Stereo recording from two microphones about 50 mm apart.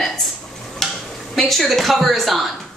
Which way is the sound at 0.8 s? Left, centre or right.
Centre.